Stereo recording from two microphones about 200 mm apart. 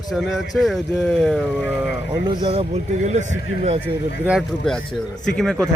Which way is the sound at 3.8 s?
5° right (ahead or behind).